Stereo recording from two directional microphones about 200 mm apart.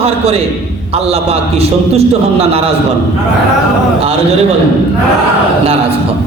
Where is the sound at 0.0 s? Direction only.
30° right (ahead or behind).